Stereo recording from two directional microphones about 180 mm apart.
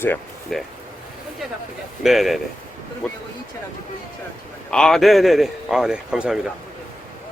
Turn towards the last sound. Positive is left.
turn(degrees=-5)  # may be behind; listen again after turning